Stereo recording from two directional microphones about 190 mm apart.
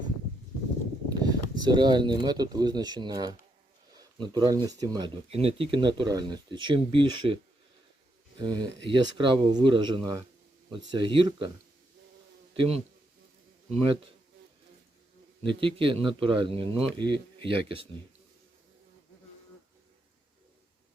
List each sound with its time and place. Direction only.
1.2 s speech: 20° right (ahead or behind)
5.3 s a man's voice: 30° right (ahead or behind)
8.4 s a man's voice: 20° right (ahead or behind)
12.5 s a man's voice: 30° right (ahead or behind)
15.4 s a man's voice: 25° right (ahead or behind)